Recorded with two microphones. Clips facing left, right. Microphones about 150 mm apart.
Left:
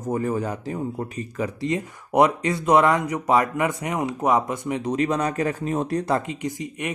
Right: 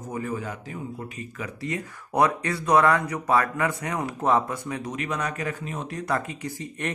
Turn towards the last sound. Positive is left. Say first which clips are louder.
# left 3 dB
turn(degrees=15)  # may be behind; listen again after turning